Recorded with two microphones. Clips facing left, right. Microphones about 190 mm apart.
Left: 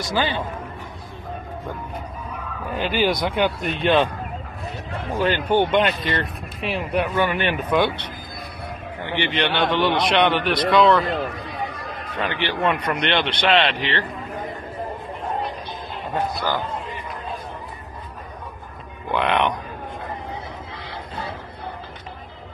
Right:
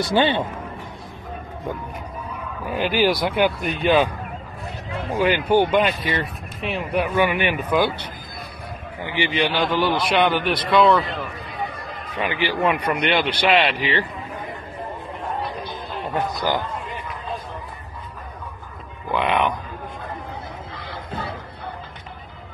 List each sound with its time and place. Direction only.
0.0 s a man's voice: 30° right (ahead or behind)
2.7 s a man's voice: 10° right (ahead or behind)
5.1 s a man's voice: 10° right (ahead or behind)
7.2 s a man's voice: 15° right (ahead or behind)
9.0 s a man's voice: 10° right (ahead or behind)
12.2 s a man's voice: 10° right (ahead or behind)
16.3 s a man's voice: 15° right (ahead or behind)
19.0 s a sound: centre (ahead or behind)